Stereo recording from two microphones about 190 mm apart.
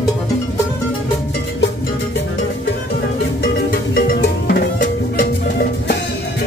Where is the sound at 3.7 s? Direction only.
50° left (ahead or behind).